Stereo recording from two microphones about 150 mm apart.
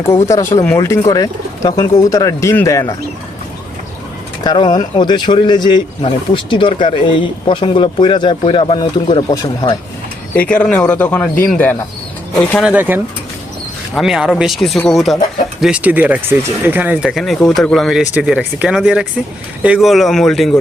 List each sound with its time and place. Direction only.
0.3 s speech: 20° left (ahead or behind)
4.4 s speech: 30° left (ahead or behind)
10.3 s speech: 10° left (ahead or behind)
12.6 s speech: 10° right (ahead or behind)